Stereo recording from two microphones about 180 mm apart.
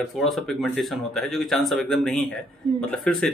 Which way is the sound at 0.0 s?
Centre (ahead or behind).